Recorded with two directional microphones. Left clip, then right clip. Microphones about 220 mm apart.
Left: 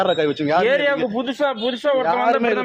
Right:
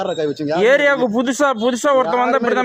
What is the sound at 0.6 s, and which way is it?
A man's voice, 55° right (ahead or behind).